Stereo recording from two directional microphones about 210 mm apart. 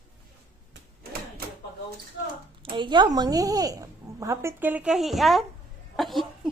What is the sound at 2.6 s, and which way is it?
A woman's voice, 20° right (ahead or behind).